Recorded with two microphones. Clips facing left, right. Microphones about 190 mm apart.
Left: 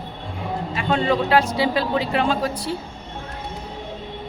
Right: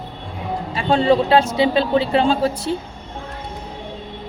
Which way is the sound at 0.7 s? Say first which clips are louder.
Right 5 dB; 30° right (ahead or behind).